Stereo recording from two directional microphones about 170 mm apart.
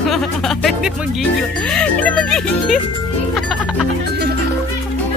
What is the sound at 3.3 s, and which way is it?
Music, centre (ahead or behind).